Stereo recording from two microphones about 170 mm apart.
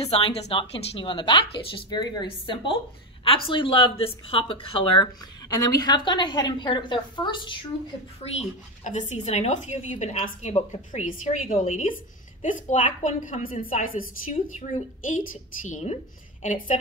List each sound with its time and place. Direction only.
0.0 s a woman's voice: 35° left (ahead or behind)
8.2 s a woman's voice: 40° left (ahead or behind)